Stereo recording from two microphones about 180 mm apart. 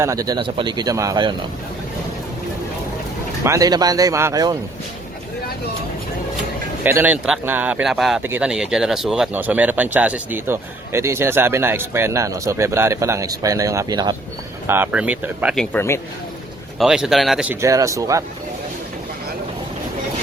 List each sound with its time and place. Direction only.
0.0 s speech: 20° right (ahead or behind)
3.4 s speech: 20° right (ahead or behind)
6.8 s speech: 10° right (ahead or behind)
14.7 s speech: 10° right (ahead or behind)
15.5 s a man's voice: 10° left (ahead or behind)
16.7 s speech: centre (ahead or behind); by 18.2 s 20° right (ahead or behind)